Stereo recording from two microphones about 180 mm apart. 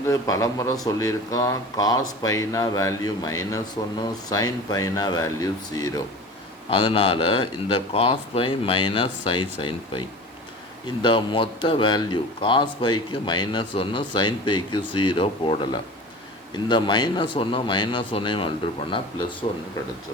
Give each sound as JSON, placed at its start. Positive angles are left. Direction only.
{"t": 0.0, "sound": "speech", "side_deg": 15}
{"t": 6.7, "sound": "speech", "side_deg": 30}